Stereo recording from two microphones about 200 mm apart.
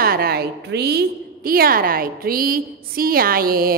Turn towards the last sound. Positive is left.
turn(degrees=-45)  # may be behind; listen again after turning